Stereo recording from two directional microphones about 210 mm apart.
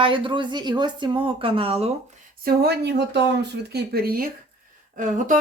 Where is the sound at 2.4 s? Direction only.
45° right (ahead or behind).